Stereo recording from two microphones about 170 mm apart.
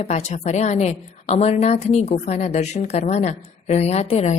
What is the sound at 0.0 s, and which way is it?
Speech, 40° left (ahead or behind).